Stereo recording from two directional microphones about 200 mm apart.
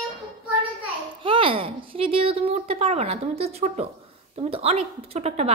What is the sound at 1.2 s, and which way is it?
A woman's voice, 25° right (ahead or behind).